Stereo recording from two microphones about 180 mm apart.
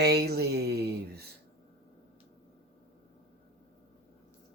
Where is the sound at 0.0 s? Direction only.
65° right (ahead or behind).